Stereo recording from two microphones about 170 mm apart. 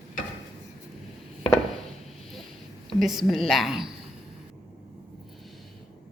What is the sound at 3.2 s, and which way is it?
Speech, centre (ahead or behind).